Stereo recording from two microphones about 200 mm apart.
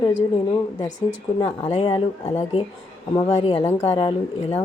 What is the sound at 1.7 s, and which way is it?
Speech, 30° left (ahead or behind).